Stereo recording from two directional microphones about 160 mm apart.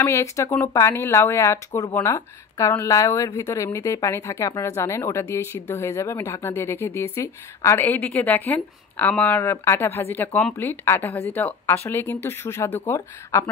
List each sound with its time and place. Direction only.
0.0 s speech: 15° left (ahead or behind)